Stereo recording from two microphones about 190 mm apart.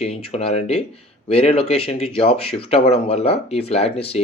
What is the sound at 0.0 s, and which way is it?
Speech, 35° left (ahead or behind).